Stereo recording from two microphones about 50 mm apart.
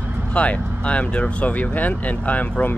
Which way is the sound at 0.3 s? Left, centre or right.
Left.